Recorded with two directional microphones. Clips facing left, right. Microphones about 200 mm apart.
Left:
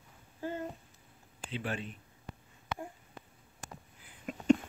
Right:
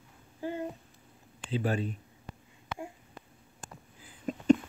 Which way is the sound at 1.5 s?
40° right (ahead or behind).